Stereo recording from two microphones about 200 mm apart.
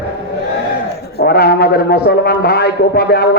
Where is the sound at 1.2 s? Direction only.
50° left (ahead or behind).